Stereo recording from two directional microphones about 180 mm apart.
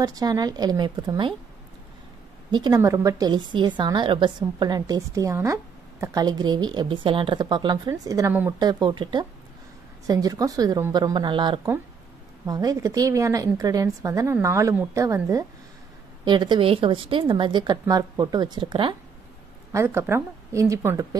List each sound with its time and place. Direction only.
0.0 s a woman's voice: 20° right (ahead or behind)
2.5 s a woman's voice: 20° right (ahead or behind)
19.7 s a woman's voice: 15° right (ahead or behind)